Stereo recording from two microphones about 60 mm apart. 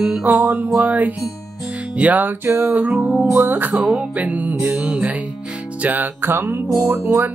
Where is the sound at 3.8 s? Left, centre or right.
Right.